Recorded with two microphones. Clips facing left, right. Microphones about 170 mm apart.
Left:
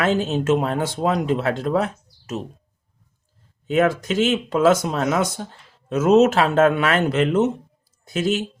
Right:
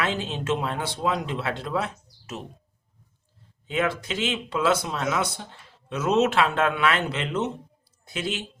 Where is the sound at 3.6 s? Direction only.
45° left (ahead or behind).